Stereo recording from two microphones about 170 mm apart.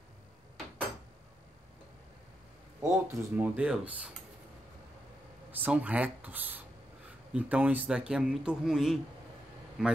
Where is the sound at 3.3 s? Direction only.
10° right (ahead or behind).